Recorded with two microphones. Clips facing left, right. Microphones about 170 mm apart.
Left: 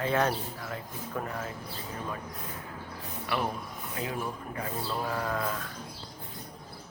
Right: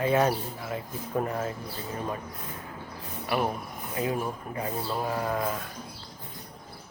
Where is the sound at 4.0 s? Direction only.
25° right (ahead or behind).